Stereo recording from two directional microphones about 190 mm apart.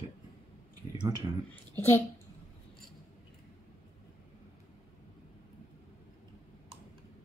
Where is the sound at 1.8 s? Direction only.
15° left (ahead or behind).